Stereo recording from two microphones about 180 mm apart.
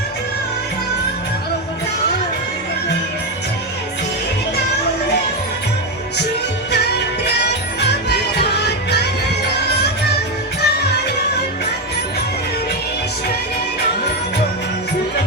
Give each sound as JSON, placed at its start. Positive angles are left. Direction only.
{"t": 6.7, "sound": "music", "side_deg": 65}
{"t": 10.6, "sound": "music", "side_deg": 65}